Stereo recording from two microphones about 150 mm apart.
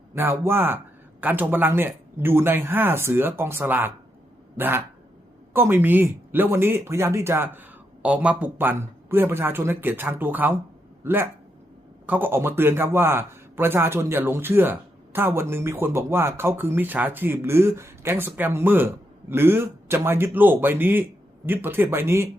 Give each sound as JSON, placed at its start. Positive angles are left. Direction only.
{"t": 0.1, "sound": "a man's voice", "side_deg": -15}